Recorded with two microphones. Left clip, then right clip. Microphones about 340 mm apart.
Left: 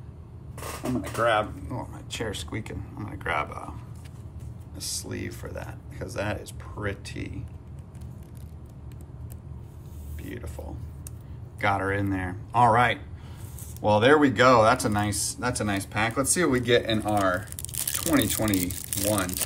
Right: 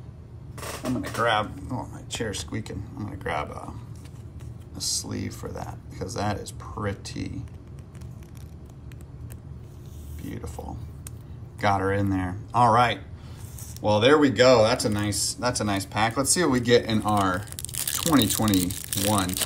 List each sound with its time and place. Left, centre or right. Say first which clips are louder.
1.7 s speech: right 2 dB; centre
4.7 s speech: right 4 dB; centre
10.3 s speech: right 2 dB; centre